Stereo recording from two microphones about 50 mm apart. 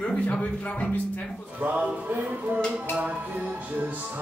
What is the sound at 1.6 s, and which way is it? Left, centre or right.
Music, right.